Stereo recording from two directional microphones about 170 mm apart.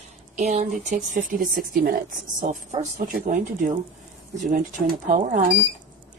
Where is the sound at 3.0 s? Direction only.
55° right (ahead or behind).